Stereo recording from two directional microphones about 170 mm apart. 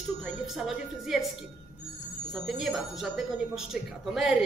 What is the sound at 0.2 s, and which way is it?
Speech, centre (ahead or behind).